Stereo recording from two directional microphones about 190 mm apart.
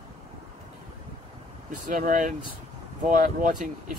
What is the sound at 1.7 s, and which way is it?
Speech, 45° right (ahead or behind).